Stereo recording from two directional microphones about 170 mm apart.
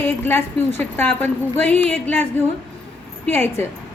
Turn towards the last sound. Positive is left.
turn(degrees=15)  # may be behind; listen again after turning